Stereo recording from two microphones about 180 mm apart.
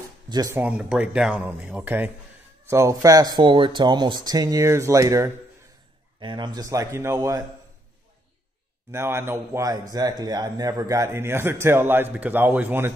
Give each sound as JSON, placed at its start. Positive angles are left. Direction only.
{"t": 0.3, "sound": "speech", "side_deg": -20}
{"t": 0.6, "sound": "a man's voice", "side_deg": -5}
{"t": 8.9, "sound": "a man's voice", "side_deg": -15}